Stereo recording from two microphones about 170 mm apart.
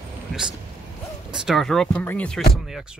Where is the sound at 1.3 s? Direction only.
5° right (ahead or behind).